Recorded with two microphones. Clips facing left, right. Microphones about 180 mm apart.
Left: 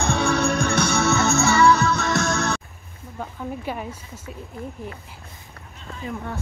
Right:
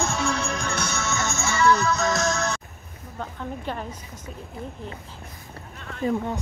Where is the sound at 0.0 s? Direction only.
60° left (ahead or behind).